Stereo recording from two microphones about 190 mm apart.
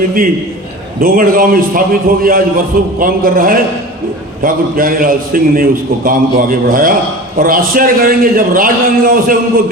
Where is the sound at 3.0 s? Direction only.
45° right (ahead or behind).